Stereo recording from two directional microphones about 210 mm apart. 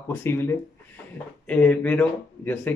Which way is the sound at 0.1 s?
10° left (ahead or behind).